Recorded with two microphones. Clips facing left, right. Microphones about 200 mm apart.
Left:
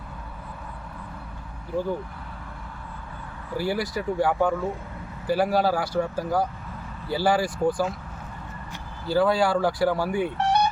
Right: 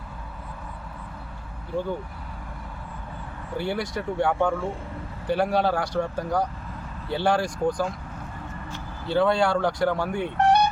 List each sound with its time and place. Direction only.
3.6 s speech: 5° left (ahead or behind)
9.0 s speech: 5° left (ahead or behind)
10.3 s a sound: 55° right (ahead or behind)